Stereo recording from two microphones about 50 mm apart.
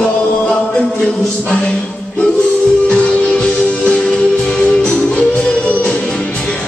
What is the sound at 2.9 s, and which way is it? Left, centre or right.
Music, centre.